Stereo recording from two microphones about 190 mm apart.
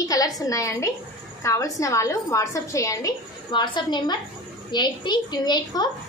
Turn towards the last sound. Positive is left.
turn(degrees=20)  # may be behind; listen again after turning